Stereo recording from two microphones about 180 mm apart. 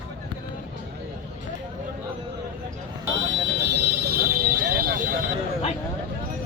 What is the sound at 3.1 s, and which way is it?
Vehicle, 90° right.